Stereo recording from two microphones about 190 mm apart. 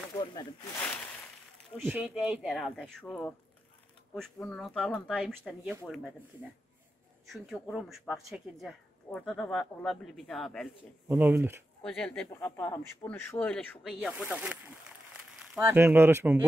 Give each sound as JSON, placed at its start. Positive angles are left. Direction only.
{"t": 0.1, "sound": "a sound", "side_deg": 20}
{"t": 1.8, "sound": "speech", "side_deg": -10}
{"t": 7.3, "sound": "speech", "side_deg": 0}
{"t": 11.1, "sound": "speech", "side_deg": -10}
{"t": 11.8, "sound": "speech", "side_deg": 5}